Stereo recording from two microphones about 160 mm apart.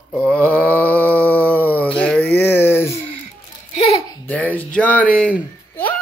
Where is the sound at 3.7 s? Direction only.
40° left (ahead or behind).